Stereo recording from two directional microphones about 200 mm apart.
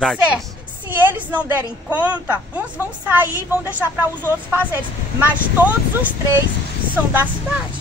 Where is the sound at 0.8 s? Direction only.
10° right (ahead or behind).